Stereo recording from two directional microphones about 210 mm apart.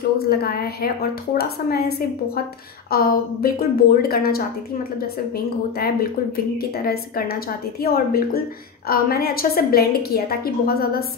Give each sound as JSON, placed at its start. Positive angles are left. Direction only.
{"t": 0.3, "sound": "a woman's voice", "side_deg": 45}
{"t": 6.8, "sound": "a woman's voice", "side_deg": 45}